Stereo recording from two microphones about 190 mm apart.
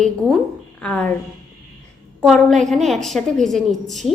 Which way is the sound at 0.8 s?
5° left (ahead or behind).